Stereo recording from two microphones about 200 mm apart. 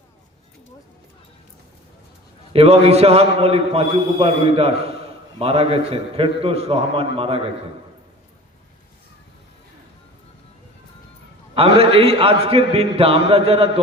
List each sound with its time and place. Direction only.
2.5 s a man's voice: 30° right (ahead or behind)
11.5 s a man's voice: 30° right (ahead or behind)